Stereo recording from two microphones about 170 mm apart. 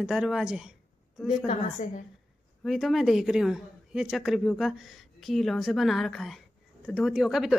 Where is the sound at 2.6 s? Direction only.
Centre (ahead or behind).